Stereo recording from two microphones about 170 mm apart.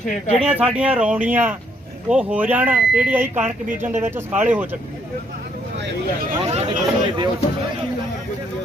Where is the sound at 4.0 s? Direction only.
15° right (ahead or behind).